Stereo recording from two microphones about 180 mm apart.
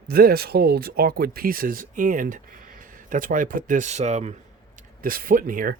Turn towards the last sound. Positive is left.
turn(degrees=-50)  # may be behind; listen again after turning